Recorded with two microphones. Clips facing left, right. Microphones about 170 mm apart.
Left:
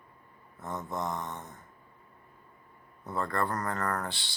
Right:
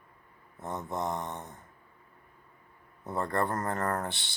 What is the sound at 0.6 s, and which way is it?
Speech, 25° right (ahead or behind).